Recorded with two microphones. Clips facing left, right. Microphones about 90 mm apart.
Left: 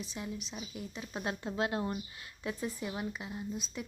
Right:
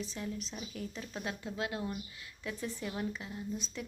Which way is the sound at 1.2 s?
30° left (ahead or behind).